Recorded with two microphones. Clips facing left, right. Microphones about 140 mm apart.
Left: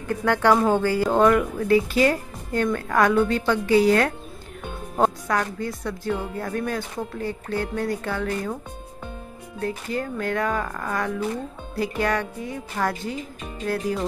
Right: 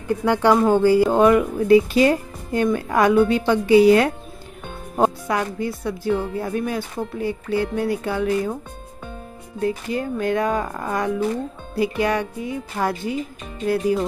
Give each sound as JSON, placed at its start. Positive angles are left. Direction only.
{"t": 0.1, "sound": "speech", "side_deg": -15}
{"t": 9.6, "sound": "speech", "side_deg": -15}